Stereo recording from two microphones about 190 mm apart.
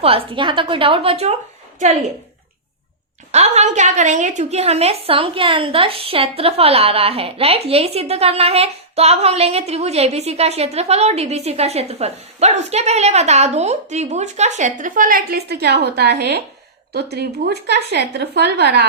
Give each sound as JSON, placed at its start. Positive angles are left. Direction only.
{"t": 0.0, "sound": "a woman's voice", "side_deg": -30}
{"t": 3.3, "sound": "a woman's voice", "side_deg": -35}